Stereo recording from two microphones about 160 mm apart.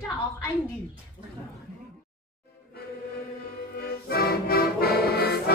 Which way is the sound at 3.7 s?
70° left (ahead or behind).